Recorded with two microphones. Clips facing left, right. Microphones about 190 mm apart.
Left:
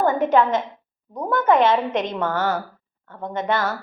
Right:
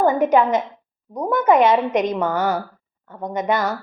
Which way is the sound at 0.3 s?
15° right (ahead or behind).